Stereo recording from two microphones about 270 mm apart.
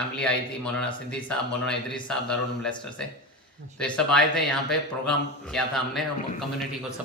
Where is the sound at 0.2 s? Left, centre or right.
Centre.